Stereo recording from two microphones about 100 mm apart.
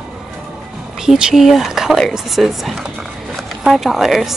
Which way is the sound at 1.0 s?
5° right (ahead or behind).